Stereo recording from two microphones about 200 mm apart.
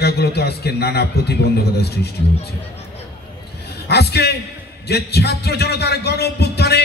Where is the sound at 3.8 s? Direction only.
55° left (ahead or behind).